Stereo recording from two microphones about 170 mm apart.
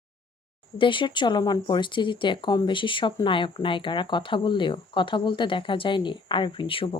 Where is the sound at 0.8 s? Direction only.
30° left (ahead or behind).